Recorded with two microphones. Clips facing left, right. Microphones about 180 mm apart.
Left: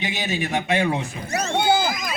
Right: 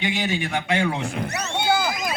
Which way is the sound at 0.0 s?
20° left (ahead or behind).